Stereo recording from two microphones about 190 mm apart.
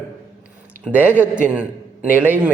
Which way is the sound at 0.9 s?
10° right (ahead or behind).